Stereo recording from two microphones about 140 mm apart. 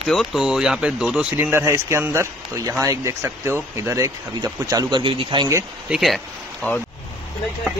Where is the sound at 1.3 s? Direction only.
15° right (ahead or behind); by 5.5 s 35° right (ahead or behind).